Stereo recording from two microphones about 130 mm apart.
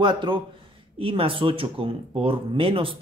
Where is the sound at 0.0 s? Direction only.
40° right (ahead or behind).